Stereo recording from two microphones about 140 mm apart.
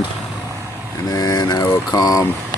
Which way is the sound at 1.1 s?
25° left (ahead or behind).